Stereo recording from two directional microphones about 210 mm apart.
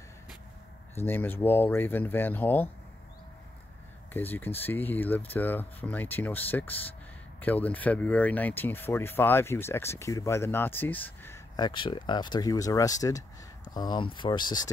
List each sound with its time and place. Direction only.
0.9 s speech: 10° left (ahead or behind)
4.1 s speech: 10° left (ahead or behind)